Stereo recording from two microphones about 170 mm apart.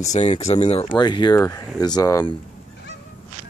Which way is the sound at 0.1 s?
40° left (ahead or behind).